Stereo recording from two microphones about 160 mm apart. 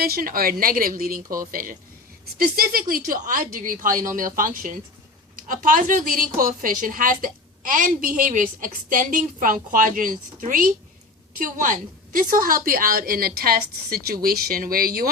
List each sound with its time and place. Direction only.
0.0 s a woman's voice: 65° right (ahead or behind)